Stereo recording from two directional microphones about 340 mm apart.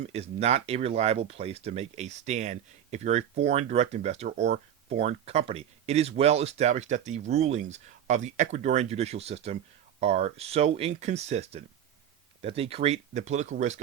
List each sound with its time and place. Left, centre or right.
0.0 s speech: centre